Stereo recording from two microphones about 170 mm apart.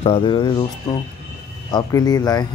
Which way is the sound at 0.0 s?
30° left (ahead or behind).